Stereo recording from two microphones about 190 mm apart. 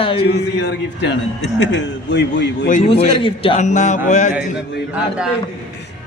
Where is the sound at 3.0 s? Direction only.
30° left (ahead or behind).